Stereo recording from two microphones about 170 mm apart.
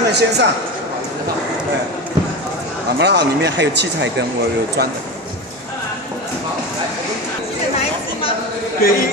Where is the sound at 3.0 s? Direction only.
80° right.